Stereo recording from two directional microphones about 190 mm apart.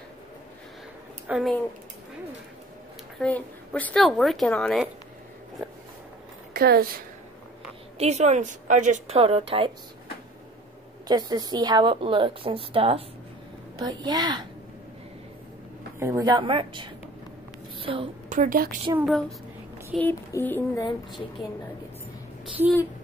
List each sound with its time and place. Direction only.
1.2 s speech: 5° right (ahead or behind)
3.2 s a woman's voice: 10° left (ahead or behind)
6.5 s a woman's voice: 55° right (ahead or behind)
8.0 s a woman's voice: 35° right (ahead or behind)
11.1 s a woman's voice: 20° right (ahead or behind)
16.0 s a woman's voice: 15° right (ahead or behind)
17.7 s a sound: 30° right (ahead or behind)
18.3 s a woman's voice: 45° right (ahead or behind)
18.9 s a woman's voice: centre (ahead or behind)
20.0 s child singing: 10° left (ahead or behind)